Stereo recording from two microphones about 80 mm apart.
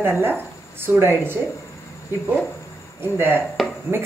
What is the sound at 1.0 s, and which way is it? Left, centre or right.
Speech, right.